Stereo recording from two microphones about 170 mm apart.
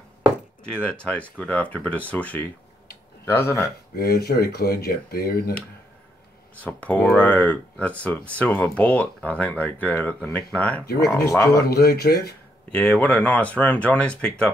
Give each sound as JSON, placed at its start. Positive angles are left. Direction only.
{"t": 0.7, "sound": "speech", "side_deg": 5}
{"t": 3.9, "sound": "speech", "side_deg": 65}
{"t": 6.6, "sound": "speech", "side_deg": 10}
{"t": 11.7, "sound": "speech", "side_deg": 65}
{"t": 12.7, "sound": "speech", "side_deg": 5}